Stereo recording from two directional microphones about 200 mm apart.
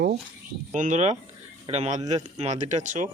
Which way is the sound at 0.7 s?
40° right (ahead or behind).